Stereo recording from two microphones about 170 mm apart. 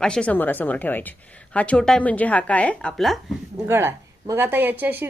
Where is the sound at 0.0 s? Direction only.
5° left (ahead or behind).